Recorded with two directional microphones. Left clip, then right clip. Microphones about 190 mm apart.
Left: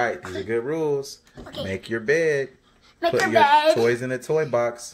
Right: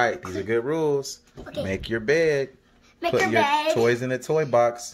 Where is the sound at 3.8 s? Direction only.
10° right (ahead or behind).